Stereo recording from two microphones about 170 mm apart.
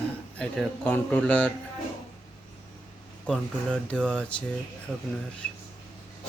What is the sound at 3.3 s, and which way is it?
A man's voice, 5° left (ahead or behind).